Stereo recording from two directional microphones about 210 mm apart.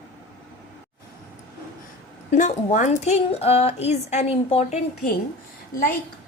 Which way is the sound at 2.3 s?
35° left (ahead or behind).